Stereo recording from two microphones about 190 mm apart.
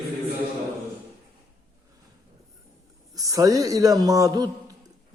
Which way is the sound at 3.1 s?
20° right (ahead or behind).